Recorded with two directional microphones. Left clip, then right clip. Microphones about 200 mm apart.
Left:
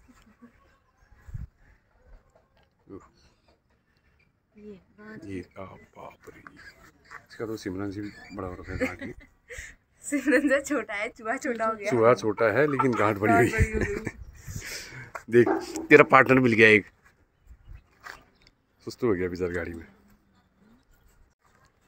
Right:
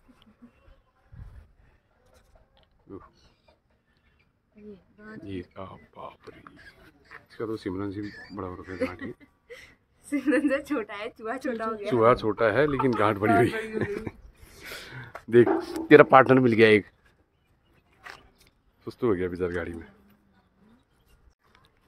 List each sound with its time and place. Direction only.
4.6 s speech: 60° left (ahead or behind)
5.3 s speech: 10° right (ahead or behind)
6.4 s dog: centre (ahead or behind)
7.2 s a man's voice: centre (ahead or behind)
8.1 s speech: 15° right (ahead or behind)
9.5 s a woman's voice: 40° left (ahead or behind); by 11.8 s 25° left (ahead or behind)
12.0 s a man's voice: centre (ahead or behind)
14.6 s a sound: 5° right (ahead or behind)
15.7 s a man's voice: 10° right (ahead or behind)
18.8 s a man's voice: centre (ahead or behind)